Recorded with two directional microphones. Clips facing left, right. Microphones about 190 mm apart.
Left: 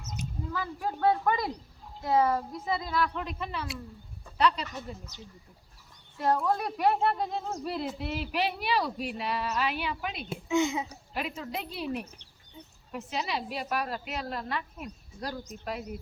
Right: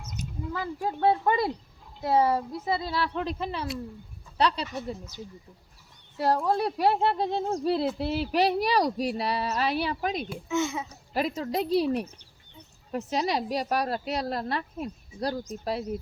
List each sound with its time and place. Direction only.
0.5 s speech: 25° right (ahead or behind)
6.1 s speech: 35° right (ahead or behind)
10.2 s speech: 15° left (ahead or behind)
11.1 s speech: 35° right (ahead or behind)